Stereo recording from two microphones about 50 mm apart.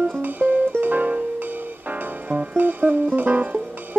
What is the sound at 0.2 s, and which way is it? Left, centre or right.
Music, right.